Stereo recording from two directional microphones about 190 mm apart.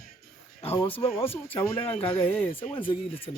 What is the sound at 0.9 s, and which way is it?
Speech, 30° left (ahead or behind).